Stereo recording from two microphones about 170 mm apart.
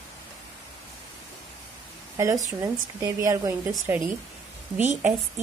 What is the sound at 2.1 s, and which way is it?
Speech, 20° right (ahead or behind).